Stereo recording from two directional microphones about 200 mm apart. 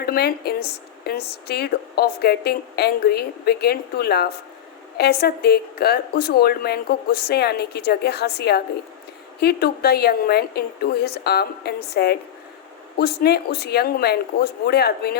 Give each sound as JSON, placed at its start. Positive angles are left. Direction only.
{"t": 0.0, "sound": "a woman's voice", "side_deg": 50}